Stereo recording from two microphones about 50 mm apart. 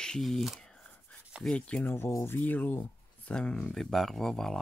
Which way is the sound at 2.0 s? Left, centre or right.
Left.